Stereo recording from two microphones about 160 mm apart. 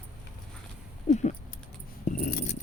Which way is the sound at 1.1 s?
45° left (ahead or behind).